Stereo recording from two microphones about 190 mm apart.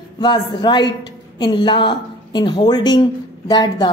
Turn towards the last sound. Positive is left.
turn(degrees=20)  # may be behind; listen again after turning